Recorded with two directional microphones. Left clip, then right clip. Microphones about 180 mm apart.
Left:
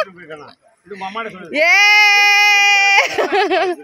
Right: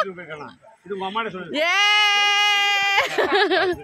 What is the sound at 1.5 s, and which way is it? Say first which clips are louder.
Speech: left 8 dB; 5° left (ahead or behind).